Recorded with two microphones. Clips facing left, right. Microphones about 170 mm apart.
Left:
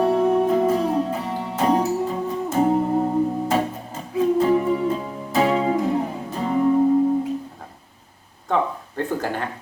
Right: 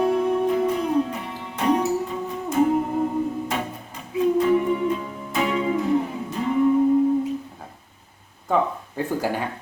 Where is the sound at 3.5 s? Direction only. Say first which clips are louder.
Left 6 dB; 35° left (ahead or behind).